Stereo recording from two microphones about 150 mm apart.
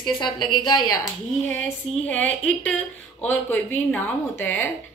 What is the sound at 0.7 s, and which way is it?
Speech, 25° left (ahead or behind).